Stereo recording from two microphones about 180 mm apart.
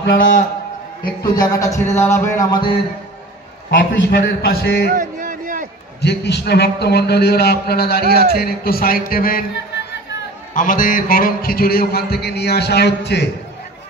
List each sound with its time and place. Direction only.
0.0 s a man's voice: 75° left (ahead or behind)
1.2 s a man's voice: 20° left (ahead or behind)
3.9 s a man's voice: 75° left (ahead or behind)
4.9 s a sound: 50° right (ahead or behind)
5.9 s a man's voice: 65° left (ahead or behind)
10.5 s a man's voice: 50° left (ahead or behind); by 13.3 s 70° left (ahead or behind)